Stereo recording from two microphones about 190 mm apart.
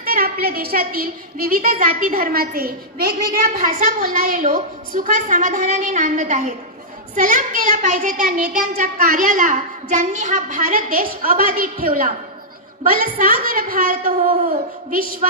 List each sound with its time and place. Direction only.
0.0 s a woman's voice: 50° right (ahead or behind)